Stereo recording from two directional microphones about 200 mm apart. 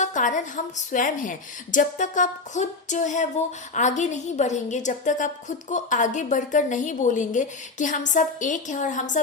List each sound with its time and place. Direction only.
0.0 s a woman's voice: 40° left (ahead or behind)